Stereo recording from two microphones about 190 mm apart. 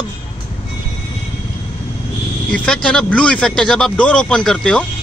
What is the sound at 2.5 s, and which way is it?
A man's voice, 5° left (ahead or behind).